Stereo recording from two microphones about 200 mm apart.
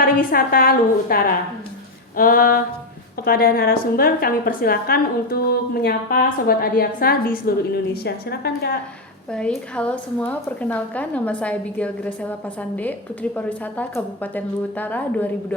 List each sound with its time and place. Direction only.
0.0 s a woman's voice: 45° left (ahead or behind)
9.3 s a woman's voice: 5° left (ahead or behind)
13.3 s a woman's voice: 5° left (ahead or behind)